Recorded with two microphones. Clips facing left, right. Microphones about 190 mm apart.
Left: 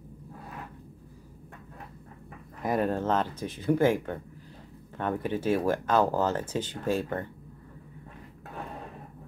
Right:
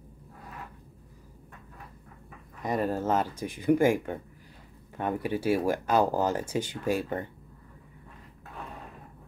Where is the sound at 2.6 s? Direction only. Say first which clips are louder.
Left 1 dB; centre (ahead or behind).